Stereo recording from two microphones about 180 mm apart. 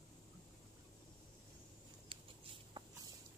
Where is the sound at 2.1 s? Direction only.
30° right (ahead or behind).